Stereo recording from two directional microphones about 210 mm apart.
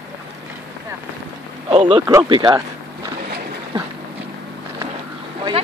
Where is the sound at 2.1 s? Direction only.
20° right (ahead or behind).